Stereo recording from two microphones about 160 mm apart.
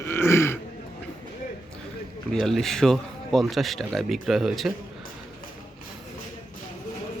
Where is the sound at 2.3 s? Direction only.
5° left (ahead or behind).